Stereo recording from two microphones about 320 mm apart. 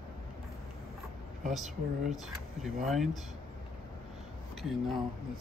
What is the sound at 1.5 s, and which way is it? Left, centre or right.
Speech, centre.